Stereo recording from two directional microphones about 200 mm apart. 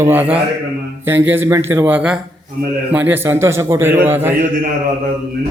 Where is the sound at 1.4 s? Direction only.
15° right (ahead or behind).